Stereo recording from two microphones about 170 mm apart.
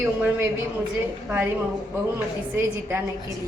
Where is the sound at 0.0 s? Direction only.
10° right (ahead or behind).